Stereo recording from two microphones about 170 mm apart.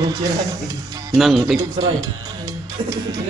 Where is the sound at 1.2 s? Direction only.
Centre (ahead or behind).